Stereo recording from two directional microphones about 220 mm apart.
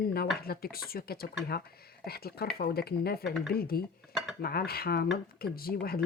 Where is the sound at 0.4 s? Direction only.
45° left (ahead or behind).